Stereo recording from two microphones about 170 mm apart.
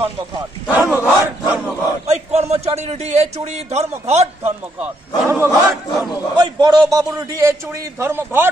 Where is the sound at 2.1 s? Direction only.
40° right (ahead or behind).